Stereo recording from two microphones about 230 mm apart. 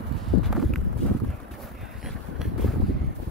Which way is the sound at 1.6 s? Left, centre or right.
Centre.